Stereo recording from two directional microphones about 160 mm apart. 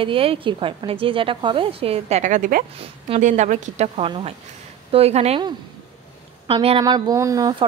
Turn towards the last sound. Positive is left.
turn(degrees=-20)  # may be behind; listen again after turning